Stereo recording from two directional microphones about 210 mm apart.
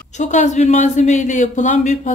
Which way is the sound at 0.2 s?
35° left (ahead or behind).